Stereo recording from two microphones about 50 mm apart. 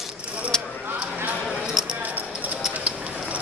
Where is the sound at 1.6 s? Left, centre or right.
Centre.